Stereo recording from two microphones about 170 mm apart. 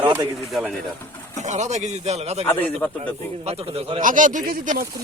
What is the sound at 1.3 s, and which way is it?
Speech, 45° right (ahead or behind).